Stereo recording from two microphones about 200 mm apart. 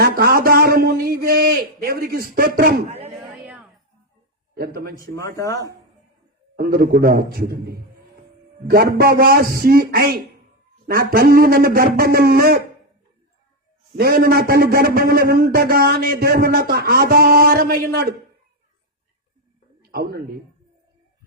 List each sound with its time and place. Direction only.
0.0 s a man's voice: 50° right (ahead or behind)
4.5 s a man's voice: 50° right (ahead or behind)
5.1 s speech: 15° left (ahead or behind)
6.6 s a man's voice: 45° right (ahead or behind)
13.9 s a man's voice: 50° right (ahead or behind)
19.8 s a man's voice: 50° right (ahead or behind)